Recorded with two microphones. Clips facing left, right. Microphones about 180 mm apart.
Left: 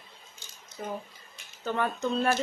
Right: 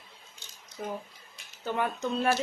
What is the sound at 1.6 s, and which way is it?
Speech, 10° right (ahead or behind).